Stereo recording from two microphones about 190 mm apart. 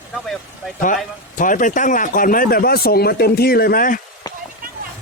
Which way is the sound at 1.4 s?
45° left (ahead or behind).